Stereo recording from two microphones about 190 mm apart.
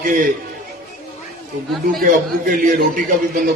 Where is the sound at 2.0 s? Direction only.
50° right (ahead or behind).